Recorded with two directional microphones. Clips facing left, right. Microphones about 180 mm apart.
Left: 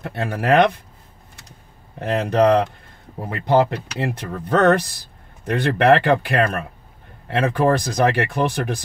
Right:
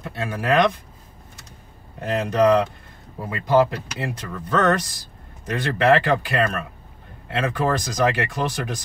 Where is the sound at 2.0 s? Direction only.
65° left (ahead or behind).